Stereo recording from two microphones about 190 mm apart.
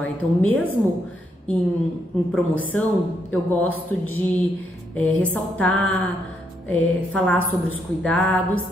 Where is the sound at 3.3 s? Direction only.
10° left (ahead or behind).